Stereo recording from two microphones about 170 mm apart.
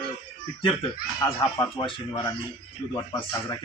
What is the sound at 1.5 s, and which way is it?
Speech, 25° left (ahead or behind).